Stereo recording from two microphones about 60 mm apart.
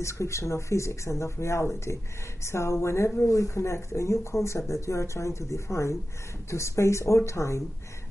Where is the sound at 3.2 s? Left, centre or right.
Left.